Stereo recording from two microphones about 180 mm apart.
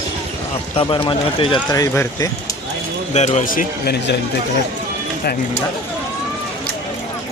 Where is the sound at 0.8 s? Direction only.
30° left (ahead or behind).